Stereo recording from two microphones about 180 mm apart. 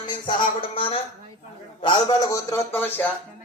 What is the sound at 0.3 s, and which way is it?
A man's voice, 30° left (ahead or behind).